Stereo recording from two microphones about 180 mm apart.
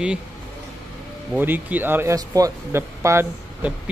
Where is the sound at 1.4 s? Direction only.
10° right (ahead or behind).